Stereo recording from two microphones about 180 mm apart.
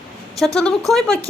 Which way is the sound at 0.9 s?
5° left (ahead or behind).